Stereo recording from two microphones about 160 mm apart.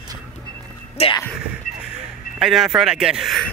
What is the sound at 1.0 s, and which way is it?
Speech, 40° left (ahead or behind).